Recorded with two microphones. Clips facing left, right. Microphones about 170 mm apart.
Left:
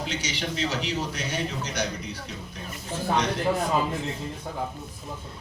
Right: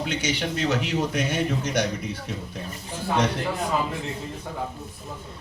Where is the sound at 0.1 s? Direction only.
55° right (ahead or behind).